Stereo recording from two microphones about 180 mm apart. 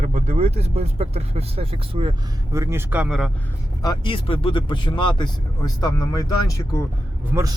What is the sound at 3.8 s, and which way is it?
Speech, 25° left (ahead or behind).